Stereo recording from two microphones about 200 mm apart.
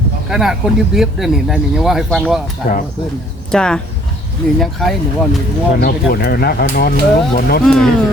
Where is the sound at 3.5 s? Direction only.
5° left (ahead or behind).